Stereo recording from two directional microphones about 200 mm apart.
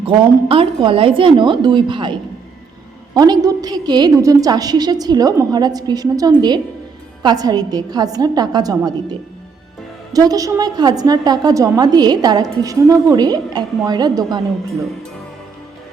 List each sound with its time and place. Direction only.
0.0 s a woman's voice: 25° right (ahead or behind)
3.2 s a woman's voice: 20° right (ahead or behind)
10.1 s a woman's voice: 20° right (ahead or behind)